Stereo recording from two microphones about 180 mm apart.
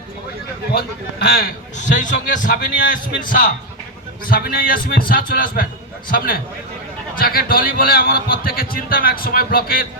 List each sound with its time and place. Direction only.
0.7 s a man's voice: 60° left (ahead or behind)